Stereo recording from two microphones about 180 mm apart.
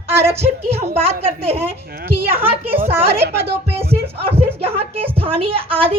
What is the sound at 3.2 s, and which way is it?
Speech, 60° right (ahead or behind).